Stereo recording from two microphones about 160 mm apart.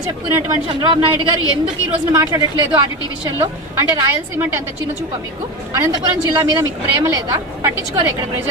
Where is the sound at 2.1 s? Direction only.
20° right (ahead or behind).